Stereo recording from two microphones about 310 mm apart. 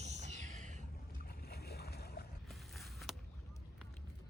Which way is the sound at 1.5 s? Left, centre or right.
Left.